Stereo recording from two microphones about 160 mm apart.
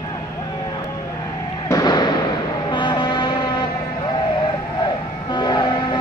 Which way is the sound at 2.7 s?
30° left (ahead or behind).